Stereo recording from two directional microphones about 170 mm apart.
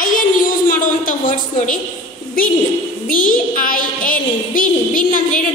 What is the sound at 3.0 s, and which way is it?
A woman's voice, 55° left (ahead or behind).